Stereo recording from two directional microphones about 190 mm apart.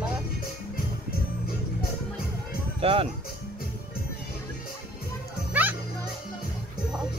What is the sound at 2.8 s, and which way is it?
Speech, 30° right (ahead or behind).